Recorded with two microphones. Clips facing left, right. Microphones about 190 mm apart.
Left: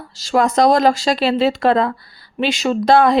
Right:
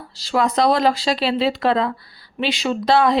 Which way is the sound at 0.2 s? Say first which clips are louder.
Left 4 dB; 45° left (ahead or behind).